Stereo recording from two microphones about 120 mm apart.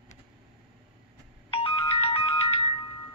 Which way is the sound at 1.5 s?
50° left (ahead or behind).